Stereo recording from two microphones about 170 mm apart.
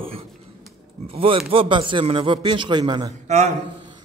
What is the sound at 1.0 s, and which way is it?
A man's voice, 35° right (ahead or behind).